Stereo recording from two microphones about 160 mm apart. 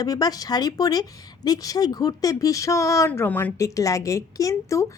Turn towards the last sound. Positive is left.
turn(degrees=20)  # may be behind; listen again after turning